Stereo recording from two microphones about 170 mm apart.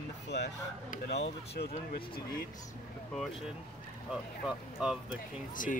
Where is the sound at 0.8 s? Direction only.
45° left (ahead or behind).